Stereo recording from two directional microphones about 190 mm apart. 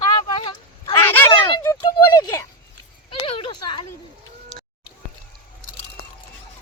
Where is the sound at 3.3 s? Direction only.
25° left (ahead or behind).